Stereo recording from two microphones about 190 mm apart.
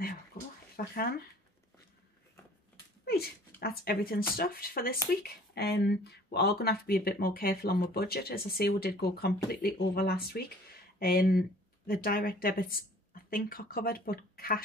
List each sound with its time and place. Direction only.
0.3 s a sound: 50° left (ahead or behind)
0.7 s speech: 50° left (ahead or behind)
3.1 s speech: 55° left (ahead or behind)